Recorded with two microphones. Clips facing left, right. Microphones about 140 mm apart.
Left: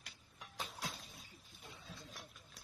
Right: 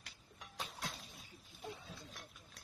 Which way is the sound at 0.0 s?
Centre (ahead or behind).